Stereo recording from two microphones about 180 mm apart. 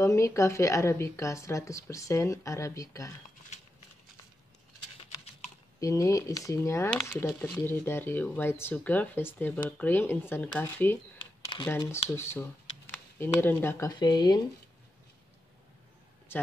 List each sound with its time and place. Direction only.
0.0 s speech: 15° left (ahead or behind)
5.8 s speech: 15° left (ahead or behind)
7.2 s speech: centre (ahead or behind)
7.5 s speech: 15° left (ahead or behind)
11.1 s a sound: 25° left (ahead or behind)
11.6 s speech: 15° left (ahead or behind)